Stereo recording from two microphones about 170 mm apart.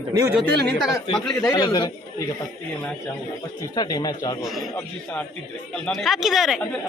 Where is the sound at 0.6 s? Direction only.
Centre (ahead or behind).